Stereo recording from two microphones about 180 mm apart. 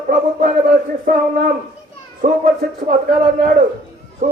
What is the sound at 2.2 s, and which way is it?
A man's voice, 45° right (ahead or behind).